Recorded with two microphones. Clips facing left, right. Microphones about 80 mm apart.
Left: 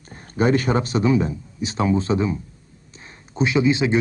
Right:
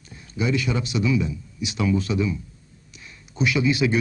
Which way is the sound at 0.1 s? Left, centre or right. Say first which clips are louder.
Left 6 dB; left.